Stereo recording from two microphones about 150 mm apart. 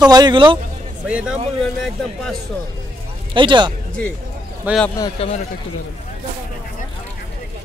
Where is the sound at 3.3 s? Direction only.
30° right (ahead or behind).